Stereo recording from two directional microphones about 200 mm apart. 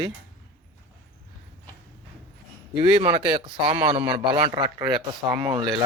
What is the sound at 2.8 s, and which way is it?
A man's voice, 30° right (ahead or behind).